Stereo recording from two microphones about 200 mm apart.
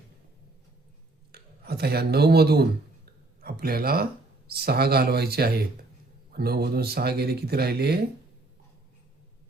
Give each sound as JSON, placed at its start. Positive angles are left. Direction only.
{"t": 1.3, "sound": "speech", "side_deg": -50}